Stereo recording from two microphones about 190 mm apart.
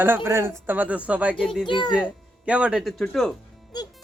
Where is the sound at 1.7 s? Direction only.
25° left (ahead or behind).